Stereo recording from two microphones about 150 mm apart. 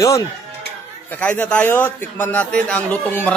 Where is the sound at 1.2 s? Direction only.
10° left (ahead or behind).